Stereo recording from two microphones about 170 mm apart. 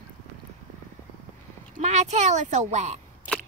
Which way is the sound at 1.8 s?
45° right (ahead or behind).